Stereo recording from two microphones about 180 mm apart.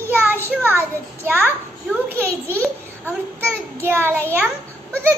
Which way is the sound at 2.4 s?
10° left (ahead or behind).